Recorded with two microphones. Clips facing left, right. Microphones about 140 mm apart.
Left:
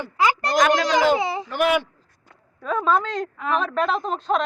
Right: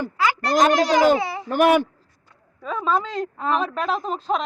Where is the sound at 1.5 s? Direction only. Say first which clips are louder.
Right 6 dB; 45° right (ahead or behind).